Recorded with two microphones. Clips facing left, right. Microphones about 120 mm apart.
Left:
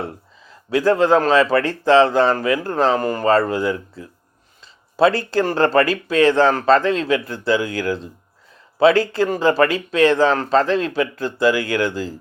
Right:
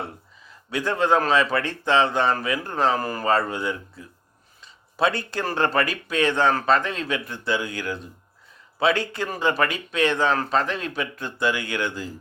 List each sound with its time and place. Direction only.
0.7 s speech: 35° left (ahead or behind)